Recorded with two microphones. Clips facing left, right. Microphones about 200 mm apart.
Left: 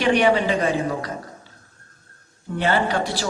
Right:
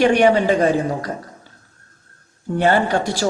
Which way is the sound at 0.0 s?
45° right (ahead or behind).